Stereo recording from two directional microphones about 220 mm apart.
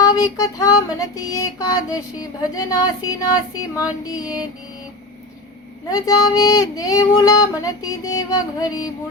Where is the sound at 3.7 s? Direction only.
15° left (ahead or behind).